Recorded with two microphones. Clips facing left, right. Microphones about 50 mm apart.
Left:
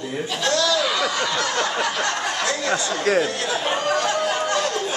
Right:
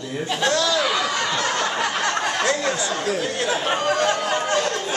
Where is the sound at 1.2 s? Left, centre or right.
Right.